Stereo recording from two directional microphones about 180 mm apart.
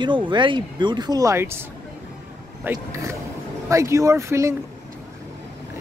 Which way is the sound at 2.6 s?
15° right (ahead or behind).